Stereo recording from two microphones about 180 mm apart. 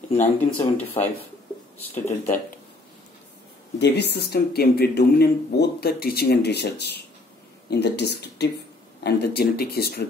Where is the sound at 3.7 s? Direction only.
70° left (ahead or behind).